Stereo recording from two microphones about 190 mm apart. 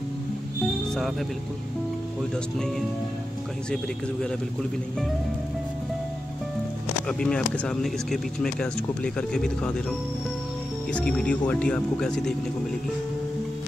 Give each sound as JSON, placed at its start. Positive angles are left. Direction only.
{"t": 7.1, "sound": "speech", "side_deg": 5}